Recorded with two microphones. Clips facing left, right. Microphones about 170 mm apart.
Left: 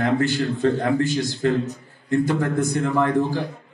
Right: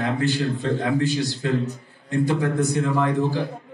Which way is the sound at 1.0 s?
45° left (ahead or behind).